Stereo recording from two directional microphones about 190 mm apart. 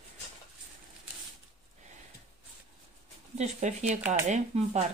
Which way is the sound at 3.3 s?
35° right (ahead or behind).